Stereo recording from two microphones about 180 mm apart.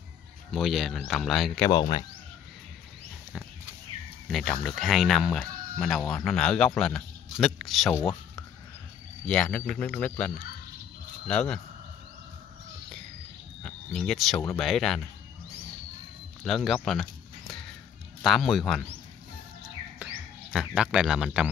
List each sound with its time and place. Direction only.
0.5 s speech: centre (ahead or behind)
1.7 s speech: 25° left (ahead or behind)
4.3 s a man's voice: centre (ahead or behind)
7.9 s speech: 15° left (ahead or behind)
13.6 s a sound: 5° left (ahead or behind)
14.6 s speech: centre (ahead or behind)
16.4 s speech: centre (ahead or behind)
20.0 s bird: 10° right (ahead or behind)
20.5 s speech: 5° right (ahead or behind)